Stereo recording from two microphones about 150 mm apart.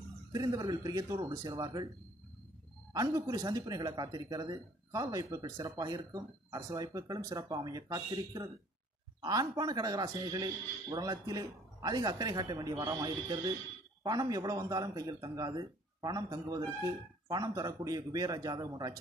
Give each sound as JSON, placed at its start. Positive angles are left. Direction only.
{"t": 0.3, "sound": "speech", "side_deg": -25}
{"t": 2.9, "sound": "speech", "side_deg": -25}